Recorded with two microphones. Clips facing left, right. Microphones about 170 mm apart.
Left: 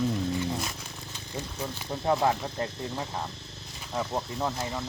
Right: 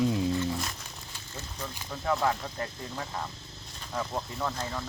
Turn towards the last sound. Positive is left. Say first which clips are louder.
# left 2 dB
turn(degrees=15)  # may be behind; listen again after turning